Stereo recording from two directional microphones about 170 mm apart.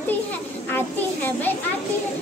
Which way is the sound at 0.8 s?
10° left (ahead or behind).